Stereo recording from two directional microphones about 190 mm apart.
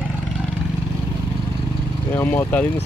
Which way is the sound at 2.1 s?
10° left (ahead or behind).